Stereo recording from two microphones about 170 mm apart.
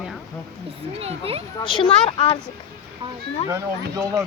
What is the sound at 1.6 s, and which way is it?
Speech, 30° left (ahead or behind).